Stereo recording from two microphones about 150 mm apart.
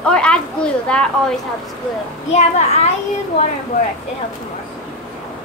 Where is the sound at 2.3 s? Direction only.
50° left (ahead or behind).